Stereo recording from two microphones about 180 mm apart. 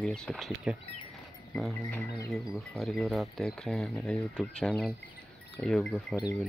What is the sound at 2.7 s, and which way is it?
Speech, centre (ahead or behind).